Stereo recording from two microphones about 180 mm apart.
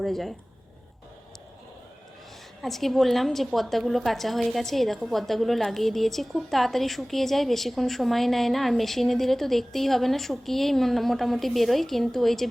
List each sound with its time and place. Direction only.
0.0 s a woman's voice: centre (ahead or behind)
2.6 s a woman's voice: centre (ahead or behind)